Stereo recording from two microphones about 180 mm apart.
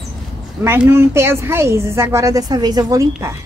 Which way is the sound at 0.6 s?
15° right (ahead or behind).